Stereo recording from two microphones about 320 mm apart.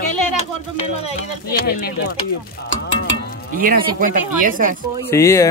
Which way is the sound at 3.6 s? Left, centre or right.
Right.